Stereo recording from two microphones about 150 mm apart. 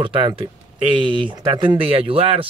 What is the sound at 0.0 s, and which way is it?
Speech, 35° right (ahead or behind).